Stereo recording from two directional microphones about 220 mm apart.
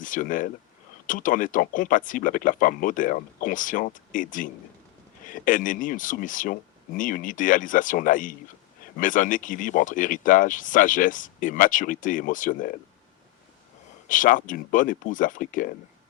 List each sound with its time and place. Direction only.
0.0 s speech: 35° left (ahead or behind)
14.1 s speech: 35° left (ahead or behind)